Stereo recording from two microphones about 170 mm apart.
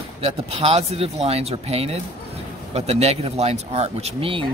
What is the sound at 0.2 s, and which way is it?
Speech, 35° right (ahead or behind).